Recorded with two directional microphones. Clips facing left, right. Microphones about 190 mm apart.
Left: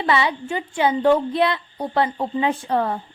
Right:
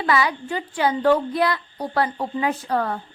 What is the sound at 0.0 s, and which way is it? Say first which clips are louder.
A woman's voice: left 1 dB; 25° left (ahead or behind).